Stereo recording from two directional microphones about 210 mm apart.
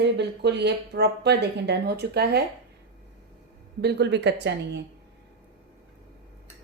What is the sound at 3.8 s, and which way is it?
Speech, 50° right (ahead or behind).